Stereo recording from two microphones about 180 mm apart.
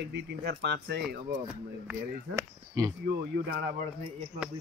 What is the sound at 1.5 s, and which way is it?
Speech, 5° right (ahead or behind).